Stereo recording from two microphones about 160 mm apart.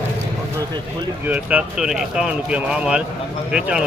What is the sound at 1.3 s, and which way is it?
Speech, 10° right (ahead or behind).